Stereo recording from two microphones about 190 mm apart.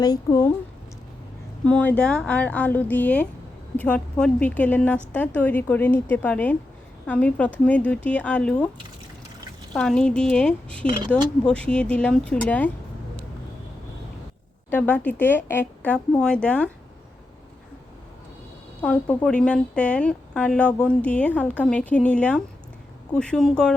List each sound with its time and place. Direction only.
0.0 s speech: 20° left (ahead or behind)
1.6 s speech: 10° left (ahead or behind)
9.7 s speech: 5° left (ahead or behind)
14.7 s speech: 5° left (ahead or behind)
18.8 s speech: 5° left (ahead or behind)